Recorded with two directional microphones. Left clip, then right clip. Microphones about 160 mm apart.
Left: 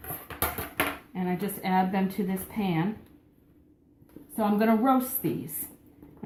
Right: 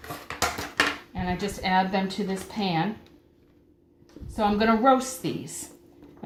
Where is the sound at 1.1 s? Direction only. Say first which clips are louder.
Right 2 dB; 20° right (ahead or behind).